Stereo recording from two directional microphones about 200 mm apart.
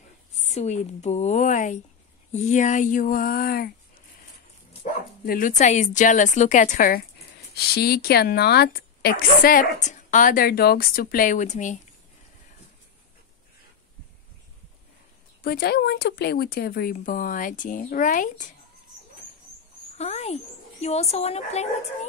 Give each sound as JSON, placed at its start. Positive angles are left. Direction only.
{"t": 0.4, "sound": "a woman's voice", "side_deg": 30}
{"t": 5.2, "sound": "a woman's voice", "side_deg": 45}
{"t": 15.4, "sound": "speech", "side_deg": 50}
{"t": 20.0, "sound": "a woman's voice", "side_deg": 35}